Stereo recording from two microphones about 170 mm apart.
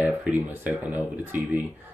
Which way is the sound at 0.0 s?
10° right (ahead or behind).